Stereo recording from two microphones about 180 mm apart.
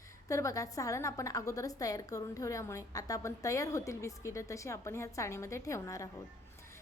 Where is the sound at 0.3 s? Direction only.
15° left (ahead or behind).